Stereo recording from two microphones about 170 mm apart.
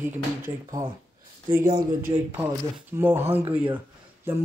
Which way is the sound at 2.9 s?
15° right (ahead or behind).